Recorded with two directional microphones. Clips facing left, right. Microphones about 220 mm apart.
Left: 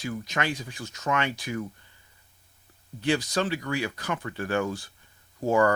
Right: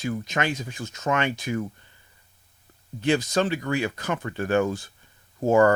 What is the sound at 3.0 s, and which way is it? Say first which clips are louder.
Speech: right 3 dB; 25° right (ahead or behind).